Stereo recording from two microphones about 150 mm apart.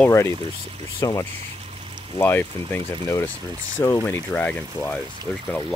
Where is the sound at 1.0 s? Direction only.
20° left (ahead or behind).